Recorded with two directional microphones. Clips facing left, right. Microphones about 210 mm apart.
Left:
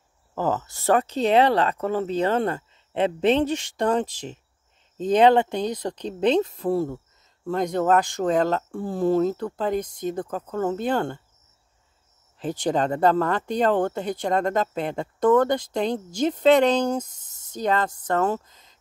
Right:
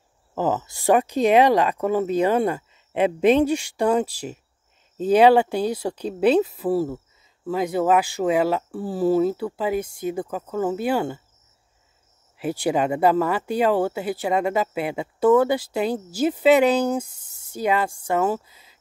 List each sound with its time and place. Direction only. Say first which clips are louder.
0.3 s speech: right 2 dB; 15° right (ahead or behind)
12.4 s speech: right 2 dB; 10° right (ahead or behind)